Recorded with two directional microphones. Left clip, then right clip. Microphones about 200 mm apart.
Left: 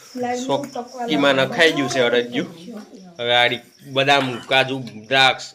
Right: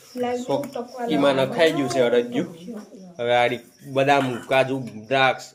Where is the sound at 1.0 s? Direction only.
Centre (ahead or behind).